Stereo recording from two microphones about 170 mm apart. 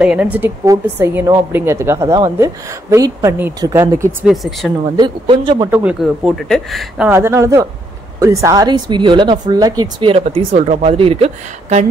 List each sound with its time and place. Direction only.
0.0 s a woman's voice: 5° right (ahead or behind)
4.3 s speech: centre (ahead or behind)
4.9 s speech: 25° right (ahead or behind)
5.7 s speech: 10° right (ahead or behind)
7.1 s a woman's voice: 15° right (ahead or behind); by 11.8 s 40° right (ahead or behind)